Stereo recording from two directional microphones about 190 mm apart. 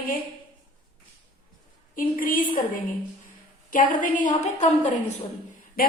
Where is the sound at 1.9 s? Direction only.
45° left (ahead or behind).